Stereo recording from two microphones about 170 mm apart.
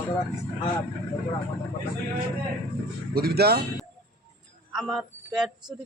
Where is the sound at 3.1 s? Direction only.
70° right (ahead or behind).